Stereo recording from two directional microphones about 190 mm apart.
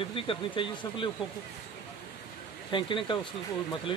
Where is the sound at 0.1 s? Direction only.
25° left (ahead or behind).